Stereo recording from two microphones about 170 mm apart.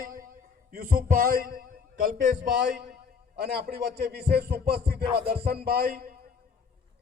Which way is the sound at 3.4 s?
65° right (ahead or behind).